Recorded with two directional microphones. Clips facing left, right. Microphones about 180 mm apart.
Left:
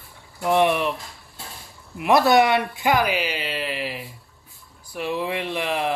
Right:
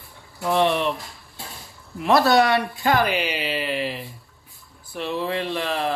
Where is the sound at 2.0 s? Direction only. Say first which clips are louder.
Left 1 dB; 15° left (ahead or behind).